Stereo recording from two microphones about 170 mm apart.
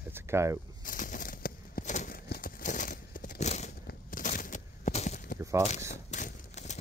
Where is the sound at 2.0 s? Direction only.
60° left (ahead or behind); by 3.7 s 40° left (ahead or behind).